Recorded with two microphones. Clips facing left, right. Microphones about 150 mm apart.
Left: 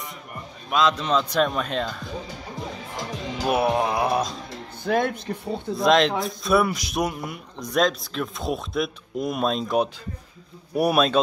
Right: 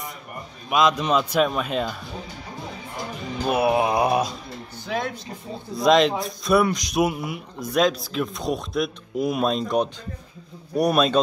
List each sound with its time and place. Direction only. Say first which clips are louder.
0.7 s a man's voice: right 2 dB; 15° right (ahead or behind)
3.0 s music: even; 90° left
3.4 s speech: right 1 dB; centre (ahead or behind)
3.7 s a man's voice: right 2 dB; 15° right (ahead or behind)
4.8 s speech: left 5 dB; 55° left (ahead or behind)
5.8 s speech: right 2 dB; centre (ahead or behind)
7.0 s speech: right 4 dB; 5° right (ahead or behind)